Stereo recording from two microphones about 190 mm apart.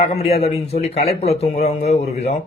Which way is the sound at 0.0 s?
35° left (ahead or behind).